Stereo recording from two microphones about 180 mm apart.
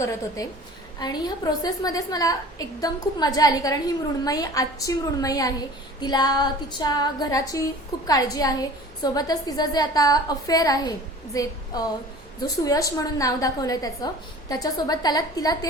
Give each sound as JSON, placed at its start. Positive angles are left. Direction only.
{"t": 0.9, "sound": "a woman's voice", "side_deg": 20}